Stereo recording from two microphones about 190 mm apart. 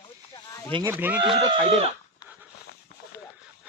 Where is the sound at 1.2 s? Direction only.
25° right (ahead or behind).